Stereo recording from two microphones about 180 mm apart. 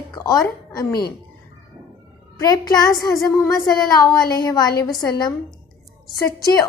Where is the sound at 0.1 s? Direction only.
20° left (ahead or behind).